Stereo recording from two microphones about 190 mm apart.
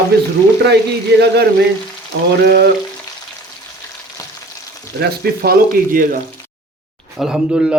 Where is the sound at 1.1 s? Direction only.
60° right (ahead or behind).